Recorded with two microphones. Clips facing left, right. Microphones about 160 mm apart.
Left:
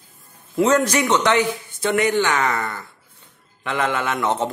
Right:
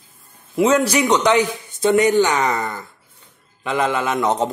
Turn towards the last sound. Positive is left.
turn(degrees=-15)  # may be behind; listen again after turning